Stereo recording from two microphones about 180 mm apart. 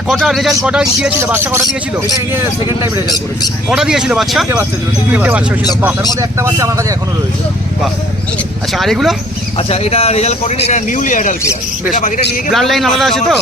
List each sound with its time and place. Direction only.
0.1 s a man's voice: centre (ahead or behind)
3.7 s a man's voice: 5° right (ahead or behind)
8.7 s a man's voice: centre (ahead or behind)
9.6 s a man's voice: 35° left (ahead or behind)
12.5 s a man's voice: centre (ahead or behind)